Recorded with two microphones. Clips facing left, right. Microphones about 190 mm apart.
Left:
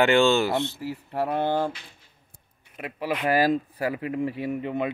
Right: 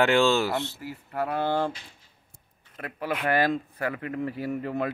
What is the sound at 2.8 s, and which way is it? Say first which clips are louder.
Speech: left 2 dB; 15° left (ahead or behind).